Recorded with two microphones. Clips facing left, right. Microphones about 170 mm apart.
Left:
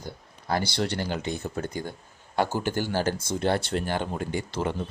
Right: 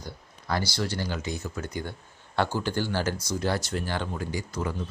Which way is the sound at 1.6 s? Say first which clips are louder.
Left 2 dB; 40° left (ahead or behind).